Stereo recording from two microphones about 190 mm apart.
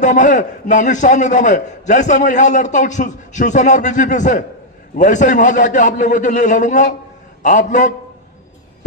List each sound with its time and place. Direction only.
0.0 s a man's voice: 40° left (ahead or behind)